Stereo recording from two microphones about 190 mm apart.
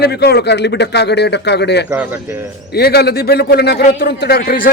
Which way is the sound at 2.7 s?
55° left (ahead or behind).